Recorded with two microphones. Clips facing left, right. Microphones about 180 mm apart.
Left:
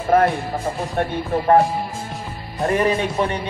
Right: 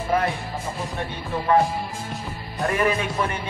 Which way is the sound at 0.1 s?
50° left (ahead or behind).